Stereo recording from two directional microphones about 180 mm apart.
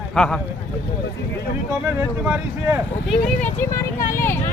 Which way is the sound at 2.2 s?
10° right (ahead or behind).